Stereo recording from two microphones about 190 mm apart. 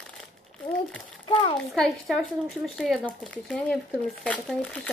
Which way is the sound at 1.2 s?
25° left (ahead or behind).